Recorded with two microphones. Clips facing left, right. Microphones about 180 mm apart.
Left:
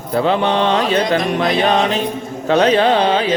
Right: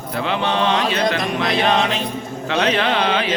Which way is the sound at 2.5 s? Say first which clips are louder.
Left 6 dB; 35° left (ahead or behind).